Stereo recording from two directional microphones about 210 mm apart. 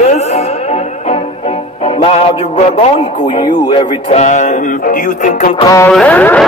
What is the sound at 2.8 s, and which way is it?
Speech, 20° left (ahead or behind).